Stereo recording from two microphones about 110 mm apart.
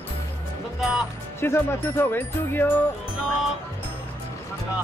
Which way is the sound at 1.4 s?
20° left (ahead or behind).